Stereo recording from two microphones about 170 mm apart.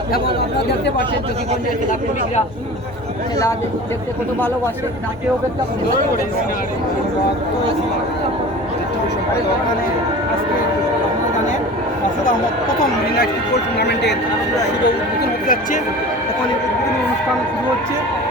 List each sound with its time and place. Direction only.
13.7 s speech: 80° left
14.8 s speech: 70° left (ahead or behind)